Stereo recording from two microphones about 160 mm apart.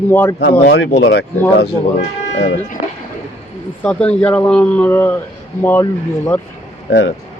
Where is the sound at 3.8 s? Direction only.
5° left (ahead or behind).